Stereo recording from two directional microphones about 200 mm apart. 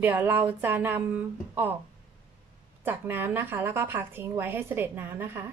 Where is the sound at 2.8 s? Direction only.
10° right (ahead or behind).